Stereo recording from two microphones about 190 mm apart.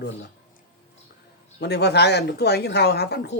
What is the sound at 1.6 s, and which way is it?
Speech, 60° left (ahead or behind).